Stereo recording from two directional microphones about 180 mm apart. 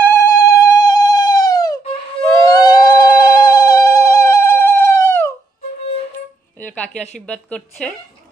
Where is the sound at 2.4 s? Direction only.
20° left (ahead or behind).